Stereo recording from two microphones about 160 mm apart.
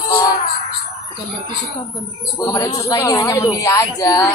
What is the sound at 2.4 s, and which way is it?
Speech, 25° left (ahead or behind).